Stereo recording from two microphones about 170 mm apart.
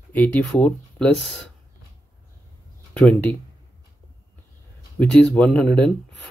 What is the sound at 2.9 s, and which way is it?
Speech, 5° left (ahead or behind).